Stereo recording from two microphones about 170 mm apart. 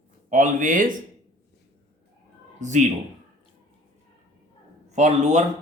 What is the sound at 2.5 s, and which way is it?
Speech, 45° right (ahead or behind).